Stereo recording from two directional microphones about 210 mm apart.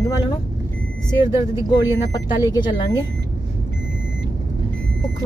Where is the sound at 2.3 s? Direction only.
20° left (ahead or behind).